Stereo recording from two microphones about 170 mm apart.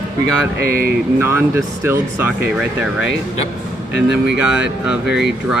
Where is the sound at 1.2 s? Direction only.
15° right (ahead or behind).